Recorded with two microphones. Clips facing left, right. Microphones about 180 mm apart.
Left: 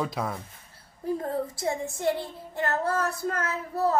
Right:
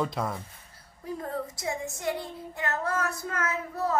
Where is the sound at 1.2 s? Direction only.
30° left (ahead or behind).